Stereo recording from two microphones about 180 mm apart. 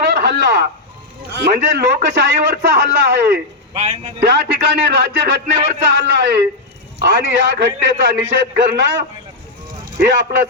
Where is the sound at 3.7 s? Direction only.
35° right (ahead or behind).